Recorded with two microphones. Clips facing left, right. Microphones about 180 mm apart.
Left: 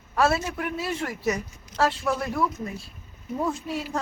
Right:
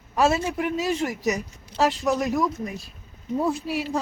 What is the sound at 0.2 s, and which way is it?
A man's voice, 15° right (ahead or behind).